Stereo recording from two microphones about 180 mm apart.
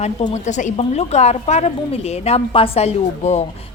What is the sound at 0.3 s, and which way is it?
A woman's voice, 40° left (ahead or behind).